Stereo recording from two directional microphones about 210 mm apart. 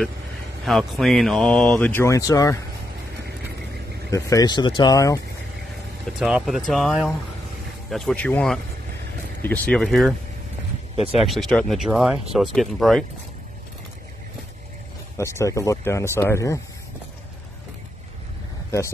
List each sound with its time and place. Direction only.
0.7 s speech: centre (ahead or behind); by 2.6 s 15° left (ahead or behind)
4.1 s speech: 15° left (ahead or behind)
6.1 s speech: centre (ahead or behind)
11.1 s speech: centre (ahead or behind)
15.1 s speech: 15° left (ahead or behind)